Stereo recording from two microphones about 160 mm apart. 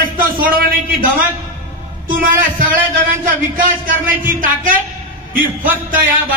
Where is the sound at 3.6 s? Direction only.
60° right (ahead or behind).